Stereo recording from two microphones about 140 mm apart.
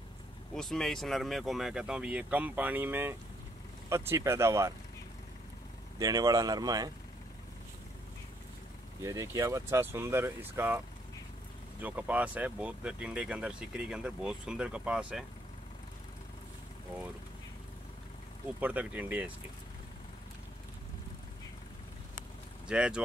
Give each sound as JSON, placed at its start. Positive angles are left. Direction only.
{"t": 0.6, "sound": "speech", "side_deg": 5}
{"t": 5.9, "sound": "speech", "side_deg": -25}
{"t": 9.0, "sound": "speech", "side_deg": -20}
{"t": 11.8, "sound": "speech", "side_deg": -10}
{"t": 18.6, "sound": "speech", "side_deg": -10}
{"t": 22.7, "sound": "speech", "side_deg": -5}